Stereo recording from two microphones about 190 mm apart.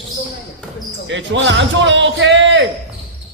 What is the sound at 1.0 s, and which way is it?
Speech, 75° right (ahead or behind).